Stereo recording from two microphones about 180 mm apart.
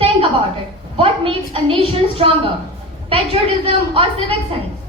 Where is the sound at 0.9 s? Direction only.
30° right (ahead or behind).